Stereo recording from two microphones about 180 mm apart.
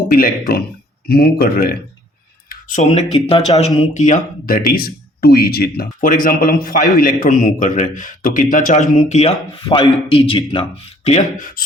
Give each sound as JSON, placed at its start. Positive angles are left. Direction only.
{"t": 0.1, "sound": "speech", "side_deg": 55}
{"t": 2.5, "sound": "speech", "side_deg": 45}